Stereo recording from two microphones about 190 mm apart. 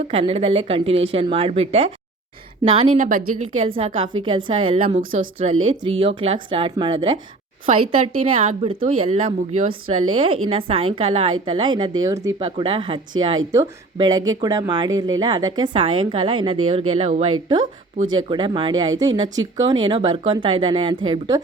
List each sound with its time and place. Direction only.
0.1 s speech: 30° right (ahead or behind)
3.0 s a woman's voice: 45° right (ahead or behind)
3.8 s speech: 30° right (ahead or behind)